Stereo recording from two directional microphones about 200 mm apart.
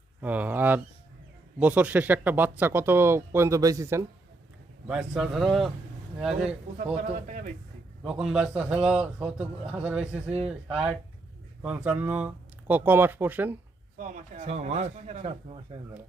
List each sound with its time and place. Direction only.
0.2 s speech: 10° right (ahead or behind)
4.9 s speech: 5° right (ahead or behind)
8.0 s speech: 5° right (ahead or behind)
14.0 s speech: 40° right (ahead or behind)